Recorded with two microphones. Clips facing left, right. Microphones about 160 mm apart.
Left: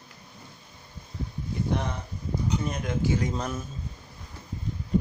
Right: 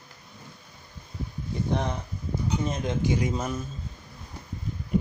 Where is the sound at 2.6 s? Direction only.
20° right (ahead or behind).